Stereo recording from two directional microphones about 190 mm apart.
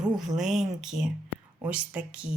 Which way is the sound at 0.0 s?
Centre (ahead or behind).